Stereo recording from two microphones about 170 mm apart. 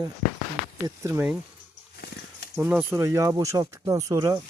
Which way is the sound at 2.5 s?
10° right (ahead or behind).